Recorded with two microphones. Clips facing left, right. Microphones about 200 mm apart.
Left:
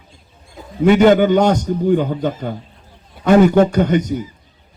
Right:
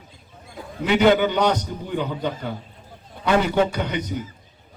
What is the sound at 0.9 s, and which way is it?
A man's voice, 45° left (ahead or behind).